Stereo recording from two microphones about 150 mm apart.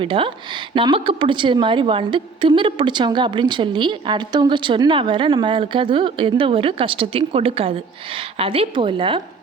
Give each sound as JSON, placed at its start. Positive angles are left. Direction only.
{"t": 0.0, "sound": "a woman's voice", "side_deg": -35}